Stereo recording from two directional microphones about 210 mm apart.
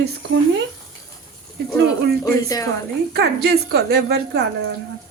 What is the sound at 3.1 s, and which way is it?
A woman's voice, 50° right (ahead or behind).